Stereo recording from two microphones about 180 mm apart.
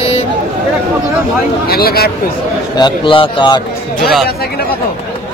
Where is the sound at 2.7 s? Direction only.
25° left (ahead or behind).